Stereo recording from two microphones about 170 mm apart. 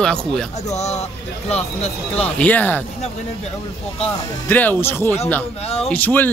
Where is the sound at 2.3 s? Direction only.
10° left (ahead or behind).